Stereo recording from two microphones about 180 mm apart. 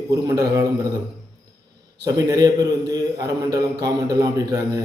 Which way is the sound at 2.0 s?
20° right (ahead or behind).